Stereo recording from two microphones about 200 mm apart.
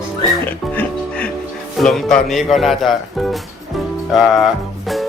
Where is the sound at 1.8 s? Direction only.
Centre (ahead or behind).